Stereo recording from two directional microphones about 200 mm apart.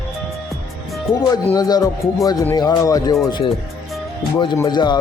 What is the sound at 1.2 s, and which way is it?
Speech, 20° left (ahead or behind).